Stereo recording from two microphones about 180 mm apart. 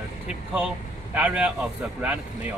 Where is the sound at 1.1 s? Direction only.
5° right (ahead or behind).